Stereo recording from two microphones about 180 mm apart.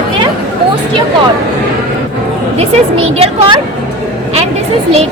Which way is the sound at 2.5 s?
35° right (ahead or behind).